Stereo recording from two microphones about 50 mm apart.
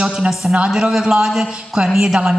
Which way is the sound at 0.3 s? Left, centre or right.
Centre.